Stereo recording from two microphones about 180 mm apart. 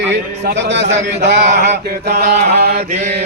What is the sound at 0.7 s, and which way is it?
Chant, 75° right (ahead or behind).